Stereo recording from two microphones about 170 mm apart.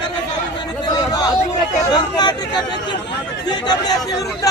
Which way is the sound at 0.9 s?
25° left (ahead or behind).